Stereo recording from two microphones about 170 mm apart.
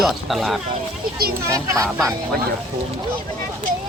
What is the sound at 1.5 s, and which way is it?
Speech, 20° right (ahead or behind).